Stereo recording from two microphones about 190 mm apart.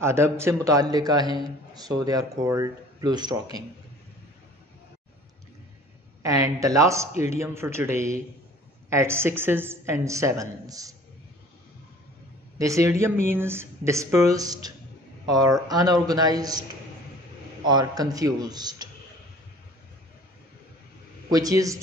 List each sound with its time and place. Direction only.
0.0 s a woman's voice: 15° right (ahead or behind)
6.2 s a woman's voice: 15° right (ahead or behind)
12.5 s a woman's voice: 15° right (ahead or behind)
17.6 s a man's voice: 20° right (ahead or behind)
21.3 s a man's voice: 20° right (ahead or behind)